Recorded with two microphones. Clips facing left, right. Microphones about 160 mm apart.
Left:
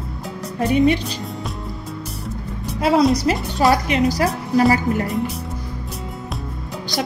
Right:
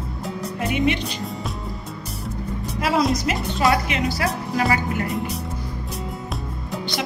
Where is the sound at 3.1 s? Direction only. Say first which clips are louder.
Left 4 dB; 30° left (ahead or behind).